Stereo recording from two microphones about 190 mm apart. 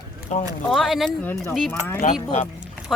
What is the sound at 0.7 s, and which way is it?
Speech, centre (ahead or behind).